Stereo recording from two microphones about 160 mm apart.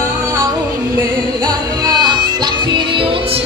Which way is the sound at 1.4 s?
25° right (ahead or behind).